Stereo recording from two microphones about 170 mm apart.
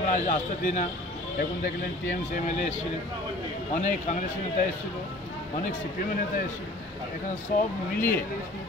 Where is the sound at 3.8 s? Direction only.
45° left (ahead or behind).